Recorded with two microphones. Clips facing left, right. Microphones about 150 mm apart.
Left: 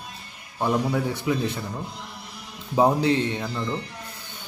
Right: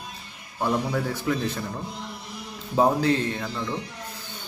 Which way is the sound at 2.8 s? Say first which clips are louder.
Left 1 dB; 15° left (ahead or behind).